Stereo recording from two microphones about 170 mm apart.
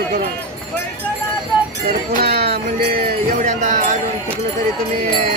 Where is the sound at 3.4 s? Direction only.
50° right (ahead or behind).